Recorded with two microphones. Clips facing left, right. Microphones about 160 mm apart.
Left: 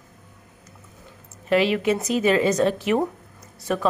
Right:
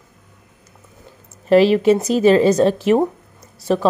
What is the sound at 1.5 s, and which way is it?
A woman's voice, 35° right (ahead or behind).